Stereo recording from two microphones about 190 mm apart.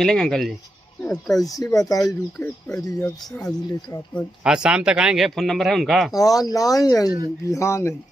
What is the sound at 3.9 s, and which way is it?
Speech, 15° left (ahead or behind).